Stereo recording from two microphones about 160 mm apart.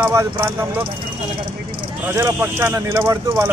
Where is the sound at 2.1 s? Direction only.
15° right (ahead or behind).